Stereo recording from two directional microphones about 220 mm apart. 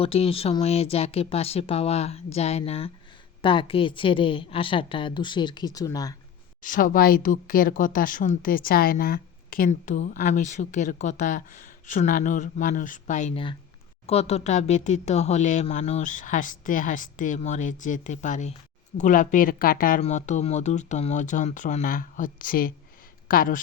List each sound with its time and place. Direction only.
0.0 s speech: 25° left (ahead or behind)
6.6 s speech: 40° left (ahead or behind)